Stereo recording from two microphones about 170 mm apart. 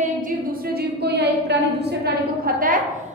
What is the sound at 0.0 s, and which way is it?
A woman's voice, 55° right (ahead or behind).